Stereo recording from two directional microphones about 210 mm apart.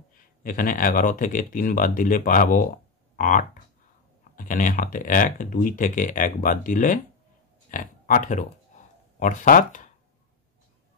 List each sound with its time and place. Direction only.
0.4 s speech: 40° left (ahead or behind)
8.7 s a sound: 35° left (ahead or behind)
9.2 s speech: 35° left (ahead or behind)